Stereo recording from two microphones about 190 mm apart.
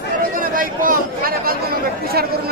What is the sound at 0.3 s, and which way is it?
Chatter, 45° right (ahead or behind).